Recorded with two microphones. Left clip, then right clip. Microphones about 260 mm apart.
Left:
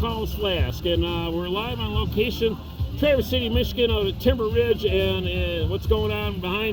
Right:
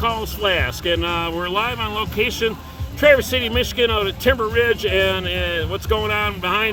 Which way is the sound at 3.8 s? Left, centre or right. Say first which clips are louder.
Right 4 dB; right.